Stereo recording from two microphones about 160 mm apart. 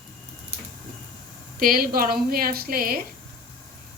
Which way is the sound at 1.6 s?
65° right (ahead or behind).